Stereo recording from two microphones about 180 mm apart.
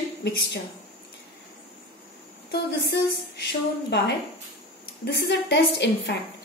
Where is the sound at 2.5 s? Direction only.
70° left (ahead or behind).